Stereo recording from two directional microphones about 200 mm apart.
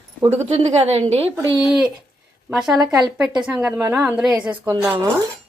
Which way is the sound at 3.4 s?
5° right (ahead or behind).